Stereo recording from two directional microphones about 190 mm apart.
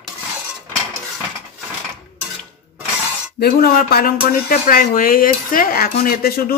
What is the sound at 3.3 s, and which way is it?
Speech, 55° left (ahead or behind).